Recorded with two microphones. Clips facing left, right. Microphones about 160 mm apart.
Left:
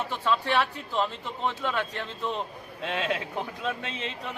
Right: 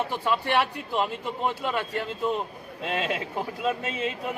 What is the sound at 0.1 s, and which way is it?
A man's voice, 10° right (ahead or behind).